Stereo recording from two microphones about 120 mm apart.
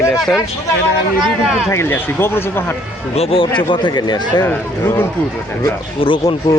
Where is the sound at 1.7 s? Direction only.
20° left (ahead or behind).